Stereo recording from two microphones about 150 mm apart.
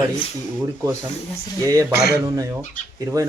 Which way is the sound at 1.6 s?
20° right (ahead or behind).